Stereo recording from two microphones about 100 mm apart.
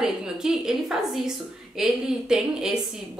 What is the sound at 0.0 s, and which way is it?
A woman's voice, 5° right (ahead or behind).